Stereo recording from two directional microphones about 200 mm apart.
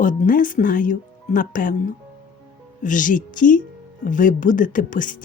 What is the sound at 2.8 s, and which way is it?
Speech, 40° left (ahead or behind).